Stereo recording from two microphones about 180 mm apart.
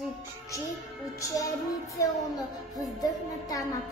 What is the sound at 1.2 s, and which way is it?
A child's voice, 20° left (ahead or behind).